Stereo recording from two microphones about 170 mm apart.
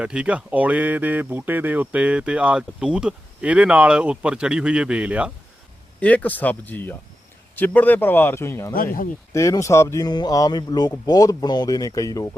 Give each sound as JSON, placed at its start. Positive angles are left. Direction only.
{"t": 0.0, "sound": "speech", "side_deg": -5}
{"t": 6.0, "sound": "a man's voice", "side_deg": 10}
{"t": 8.7, "sound": "speech", "side_deg": 60}
{"t": 9.3, "sound": "speech", "side_deg": 20}